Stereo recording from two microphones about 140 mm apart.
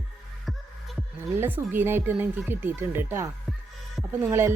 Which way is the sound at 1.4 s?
15° right (ahead or behind).